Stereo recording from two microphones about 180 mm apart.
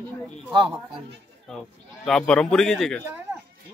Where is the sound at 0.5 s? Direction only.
25° right (ahead or behind).